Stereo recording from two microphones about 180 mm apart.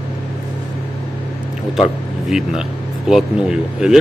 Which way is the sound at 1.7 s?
Centre (ahead or behind).